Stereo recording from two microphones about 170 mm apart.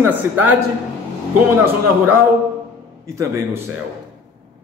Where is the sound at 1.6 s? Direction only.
10° right (ahead or behind).